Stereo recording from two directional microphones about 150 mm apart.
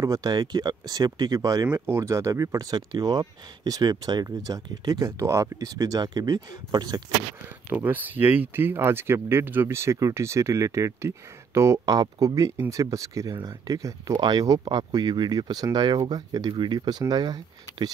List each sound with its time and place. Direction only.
0.0 s speech: 25° right (ahead or behind)
7.7 s speech: 10° right (ahead or behind); by 17.9 s 30° right (ahead or behind)